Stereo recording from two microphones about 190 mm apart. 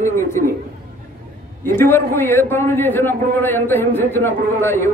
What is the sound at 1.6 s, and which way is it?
A man's voice, 10° left (ahead or behind).